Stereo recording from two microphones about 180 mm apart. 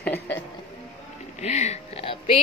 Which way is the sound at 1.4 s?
40° left (ahead or behind).